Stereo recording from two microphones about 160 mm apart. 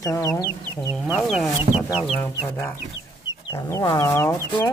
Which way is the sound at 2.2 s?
15° left (ahead or behind).